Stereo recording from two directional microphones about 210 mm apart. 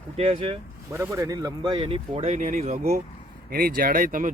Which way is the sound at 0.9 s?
15° right (ahead or behind).